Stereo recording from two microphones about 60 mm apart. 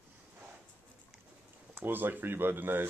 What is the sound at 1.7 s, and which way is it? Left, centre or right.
Speech, right.